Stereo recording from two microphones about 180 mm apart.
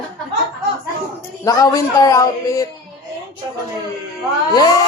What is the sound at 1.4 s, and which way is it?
Speech, 20° left (ahead or behind).